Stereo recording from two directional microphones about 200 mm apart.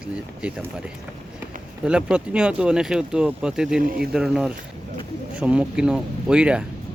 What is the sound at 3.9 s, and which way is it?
Speech, 50° right (ahead or behind).